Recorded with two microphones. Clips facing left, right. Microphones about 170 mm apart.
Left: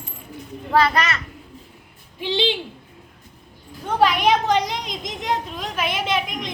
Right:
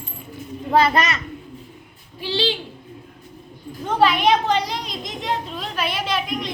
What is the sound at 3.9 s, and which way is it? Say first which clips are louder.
A woman's voice: right 1 dB; 10° left (ahead or behind).